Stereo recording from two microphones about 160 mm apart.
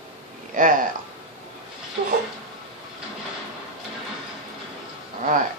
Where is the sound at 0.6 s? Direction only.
55° right (ahead or behind).